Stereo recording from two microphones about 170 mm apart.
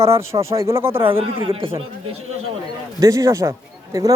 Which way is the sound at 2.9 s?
20° right (ahead or behind).